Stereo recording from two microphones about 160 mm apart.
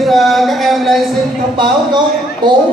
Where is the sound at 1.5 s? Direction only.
30° right (ahead or behind).